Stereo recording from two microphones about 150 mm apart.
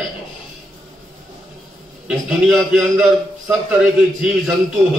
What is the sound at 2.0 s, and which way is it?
A man's voice, 5° right (ahead or behind).